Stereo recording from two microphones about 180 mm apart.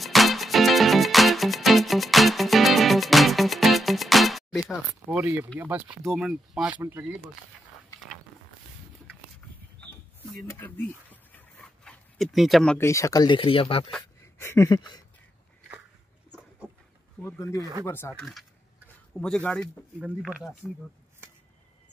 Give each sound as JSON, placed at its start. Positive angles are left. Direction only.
{"t": 0.0, "sound": "music", "side_deg": 0}
{"t": 5.6, "sound": "speech", "side_deg": -10}
{"t": 10.4, "sound": "a sound", "side_deg": 10}
{"t": 12.7, "sound": "speech", "side_deg": 15}
{"t": 13.9, "sound": "a sound", "side_deg": 15}
{"t": 17.2, "sound": "speech", "side_deg": 15}
{"t": 19.1, "sound": "speech", "side_deg": 5}